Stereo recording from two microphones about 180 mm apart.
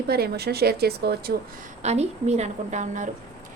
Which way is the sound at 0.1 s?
60° right (ahead or behind).